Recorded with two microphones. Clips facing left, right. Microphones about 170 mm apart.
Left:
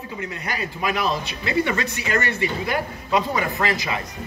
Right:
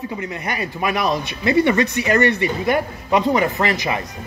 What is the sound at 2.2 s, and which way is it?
Speech, 50° right (ahead or behind).